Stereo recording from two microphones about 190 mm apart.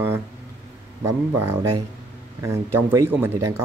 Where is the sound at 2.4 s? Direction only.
15° right (ahead or behind).